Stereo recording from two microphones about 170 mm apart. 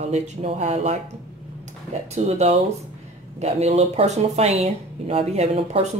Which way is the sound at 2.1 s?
40° right (ahead or behind).